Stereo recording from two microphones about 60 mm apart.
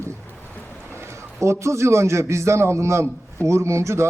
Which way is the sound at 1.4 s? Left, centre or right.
Right.